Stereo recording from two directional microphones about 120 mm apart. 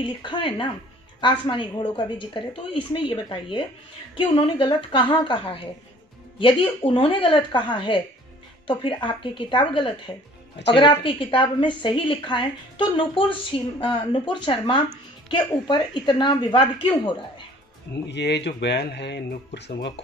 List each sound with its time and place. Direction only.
0.0 s a woman's voice: 45° left (ahead or behind)